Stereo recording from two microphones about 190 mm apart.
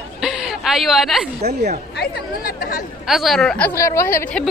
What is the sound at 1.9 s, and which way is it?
Speech, 55° left (ahead or behind).